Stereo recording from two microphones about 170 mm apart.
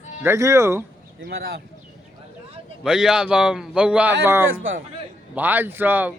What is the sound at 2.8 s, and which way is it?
A man's voice, 5° right (ahead or behind).